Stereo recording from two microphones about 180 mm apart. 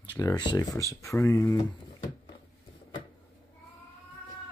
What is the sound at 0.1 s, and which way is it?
Speech, 20° left (ahead or behind).